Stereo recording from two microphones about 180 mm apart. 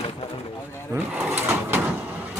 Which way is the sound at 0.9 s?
10° right (ahead or behind).